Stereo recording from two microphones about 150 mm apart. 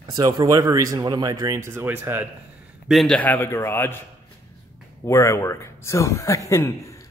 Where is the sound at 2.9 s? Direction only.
5° left (ahead or behind).